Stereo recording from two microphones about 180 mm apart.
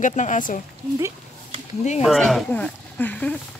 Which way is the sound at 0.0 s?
45° left (ahead or behind).